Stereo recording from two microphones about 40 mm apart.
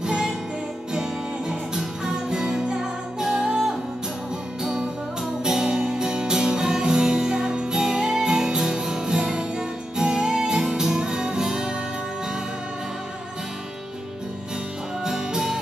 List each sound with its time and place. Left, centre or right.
0.0 s music: centre
1.5 s music: centre
5.4 s music: centre
15.0 s music: centre